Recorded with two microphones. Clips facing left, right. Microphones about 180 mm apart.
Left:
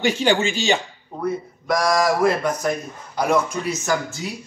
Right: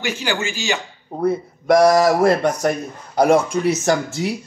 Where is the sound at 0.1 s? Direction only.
30° left (ahead or behind).